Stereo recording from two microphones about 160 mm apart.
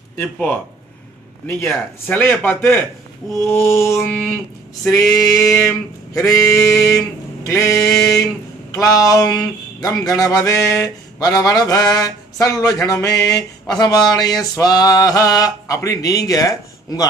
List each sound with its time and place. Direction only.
0.2 s speech: 10° left (ahead or behind)
1.7 s speech: 10° left (ahead or behind)
4.8 s a sound: 20° left (ahead or behind)